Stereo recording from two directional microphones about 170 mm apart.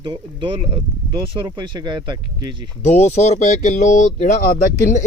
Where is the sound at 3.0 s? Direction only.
40° left (ahead or behind).